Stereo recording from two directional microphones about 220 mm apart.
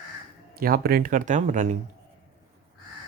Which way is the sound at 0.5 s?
40° right (ahead or behind).